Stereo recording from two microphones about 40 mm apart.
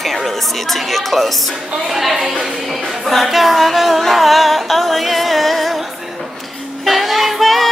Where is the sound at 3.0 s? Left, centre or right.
Centre.